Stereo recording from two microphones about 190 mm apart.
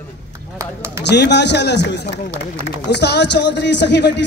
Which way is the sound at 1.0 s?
65° left (ahead or behind).